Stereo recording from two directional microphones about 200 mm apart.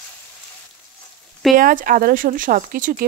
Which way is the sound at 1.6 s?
45° right (ahead or behind).